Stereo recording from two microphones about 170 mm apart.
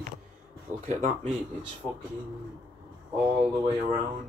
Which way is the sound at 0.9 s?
45° right (ahead or behind).